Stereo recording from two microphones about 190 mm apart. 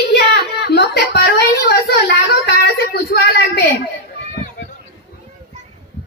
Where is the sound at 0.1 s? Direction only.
60° left (ahead or behind).